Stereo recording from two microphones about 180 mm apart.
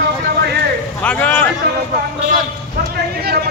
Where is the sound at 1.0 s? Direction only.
10° left (ahead or behind).